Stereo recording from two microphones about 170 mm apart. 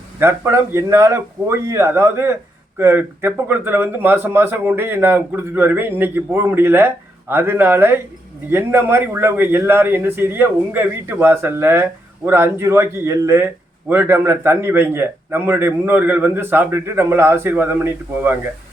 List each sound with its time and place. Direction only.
0.2 s a man's voice: 15° right (ahead or behind)